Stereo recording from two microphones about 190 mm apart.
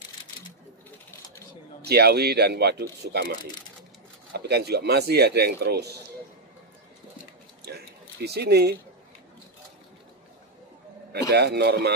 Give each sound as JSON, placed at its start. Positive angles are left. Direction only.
{"t": 1.9, "sound": "speech", "side_deg": -55}
{"t": 7.6, "sound": "a sound", "side_deg": -60}
{"t": 11.1, "sound": "speech", "side_deg": -60}